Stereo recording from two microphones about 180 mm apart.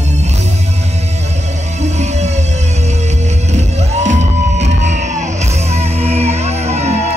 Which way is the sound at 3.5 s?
40° right (ahead or behind).